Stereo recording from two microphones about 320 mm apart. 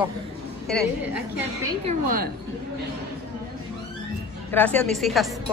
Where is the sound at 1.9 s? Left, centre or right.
Right.